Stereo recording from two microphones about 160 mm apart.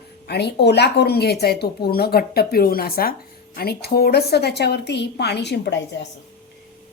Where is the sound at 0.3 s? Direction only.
90° left.